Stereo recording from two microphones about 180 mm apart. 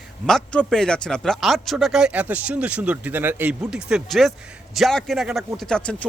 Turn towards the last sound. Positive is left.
turn(degrees=5)  # may be behind; listen again after turning